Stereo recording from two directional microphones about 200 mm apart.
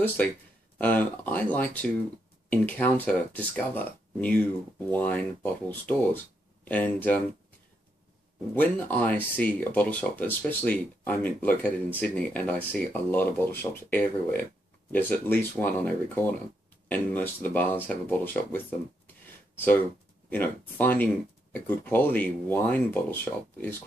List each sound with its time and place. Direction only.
0.7 s speech: 10° left (ahead or behind)
8.5 s speech: 10° left (ahead or behind)
20.2 s speech: 10° left (ahead or behind)